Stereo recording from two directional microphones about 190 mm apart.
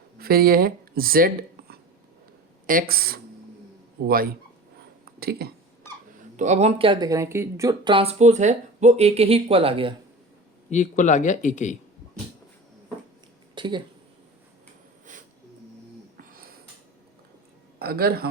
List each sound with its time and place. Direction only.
0.2 s speech: 55° right (ahead or behind)
6.3 s speech: 40° right (ahead or behind); by 7.9 s 15° right (ahead or behind)
7.9 s speech: 35° right (ahead or behind)
10.7 s speech: 40° left (ahead or behind)
13.6 s speech: 25° right (ahead or behind)
16.1 s a sound: 50° right (ahead or behind)
17.7 s a man's voice: 55° right (ahead or behind)